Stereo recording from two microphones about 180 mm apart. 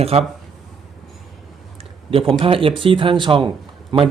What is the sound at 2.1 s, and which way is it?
Speech, 30° right (ahead or behind).